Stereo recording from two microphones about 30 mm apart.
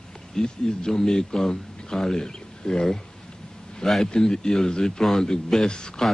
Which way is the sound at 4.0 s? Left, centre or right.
Left.